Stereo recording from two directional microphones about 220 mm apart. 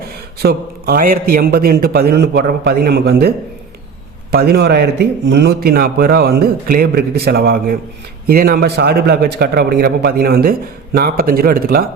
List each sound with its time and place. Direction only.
0.0 s a man's voice: 45° right (ahead or behind)